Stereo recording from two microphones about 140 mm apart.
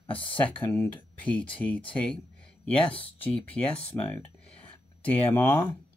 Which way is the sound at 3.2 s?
10° left (ahead or behind).